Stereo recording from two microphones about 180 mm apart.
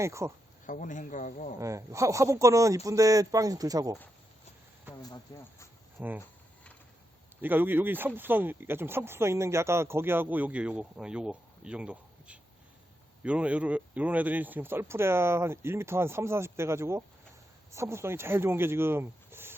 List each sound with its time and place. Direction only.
0.0 s speech: 15° right (ahead or behind)
0.7 s speech: 45° left (ahead or behind)
1.5 s speech: 15° right (ahead or behind)
5.0 s speech: 20° left (ahead or behind)
6.0 s speech: 10° right (ahead or behind)
7.4 s speech: 10° right (ahead or behind)